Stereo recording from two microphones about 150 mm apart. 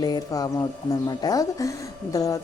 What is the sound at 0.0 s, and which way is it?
A woman's voice, 25° left (ahead or behind).